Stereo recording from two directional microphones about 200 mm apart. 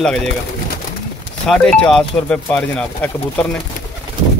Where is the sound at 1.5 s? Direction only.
5° left (ahead or behind).